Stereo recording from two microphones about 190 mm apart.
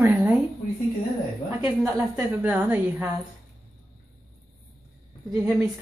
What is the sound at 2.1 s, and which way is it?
Speech, 10° right (ahead or behind).